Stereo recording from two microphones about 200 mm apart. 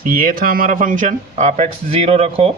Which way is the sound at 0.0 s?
45° right (ahead or behind).